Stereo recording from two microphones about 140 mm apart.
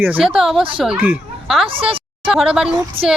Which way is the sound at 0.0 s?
10° right (ahead or behind).